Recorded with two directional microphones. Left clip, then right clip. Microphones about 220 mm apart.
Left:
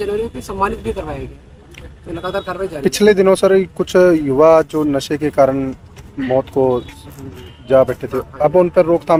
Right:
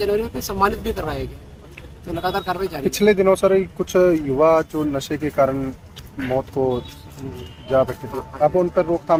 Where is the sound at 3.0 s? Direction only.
50° left (ahead or behind).